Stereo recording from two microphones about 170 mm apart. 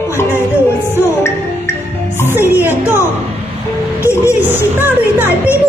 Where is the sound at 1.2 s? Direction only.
15° left (ahead or behind).